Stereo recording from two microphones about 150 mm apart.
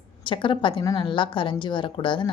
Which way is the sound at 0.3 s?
35° left (ahead or behind).